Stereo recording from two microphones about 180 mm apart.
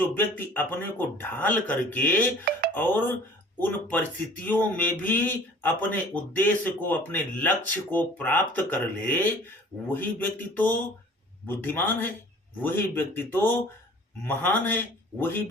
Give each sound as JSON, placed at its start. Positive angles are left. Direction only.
{"t": 0.0, "sound": "speech", "side_deg": 10}